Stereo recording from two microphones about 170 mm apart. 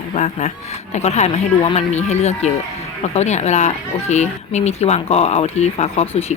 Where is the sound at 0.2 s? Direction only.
45° left (ahead or behind).